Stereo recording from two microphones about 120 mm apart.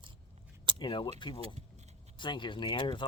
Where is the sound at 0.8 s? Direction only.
40° left (ahead or behind).